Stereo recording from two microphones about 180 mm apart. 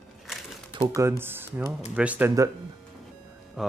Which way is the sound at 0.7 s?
15° right (ahead or behind).